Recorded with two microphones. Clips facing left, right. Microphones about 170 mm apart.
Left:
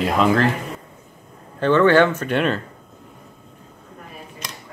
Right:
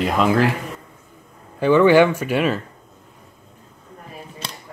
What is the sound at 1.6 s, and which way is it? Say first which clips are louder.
Speech: right 2 dB; 10° right (ahead or behind).